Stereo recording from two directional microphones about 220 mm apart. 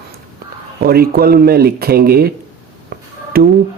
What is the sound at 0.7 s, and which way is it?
Speech, 45° right (ahead or behind).